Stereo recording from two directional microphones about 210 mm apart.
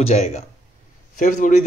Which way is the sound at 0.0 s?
30° left (ahead or behind).